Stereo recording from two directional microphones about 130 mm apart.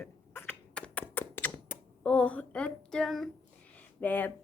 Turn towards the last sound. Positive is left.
turn(degrees=15)  # may be behind; listen again after turning